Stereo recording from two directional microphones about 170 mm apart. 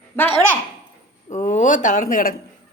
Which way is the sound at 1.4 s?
45° left (ahead or behind).